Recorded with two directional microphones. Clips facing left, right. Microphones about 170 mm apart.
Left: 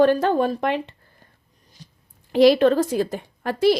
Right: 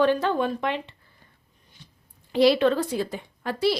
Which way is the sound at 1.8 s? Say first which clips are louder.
Left 5 dB; 40° left (ahead or behind).